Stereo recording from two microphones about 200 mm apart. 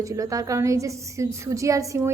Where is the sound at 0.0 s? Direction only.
15° right (ahead or behind).